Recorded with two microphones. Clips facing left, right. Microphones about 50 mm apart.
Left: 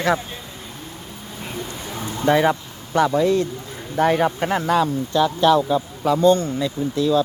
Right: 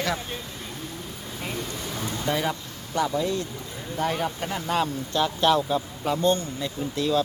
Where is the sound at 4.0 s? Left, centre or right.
Left.